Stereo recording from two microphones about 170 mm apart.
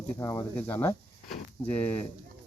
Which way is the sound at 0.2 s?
20° left (ahead or behind).